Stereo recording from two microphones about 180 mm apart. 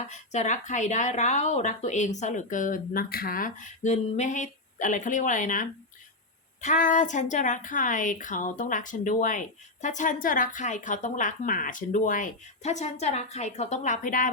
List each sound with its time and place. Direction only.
0.1 s a woman's voice: 40° left (ahead or behind)